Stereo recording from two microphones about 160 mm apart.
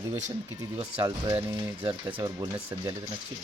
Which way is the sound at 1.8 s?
35° right (ahead or behind).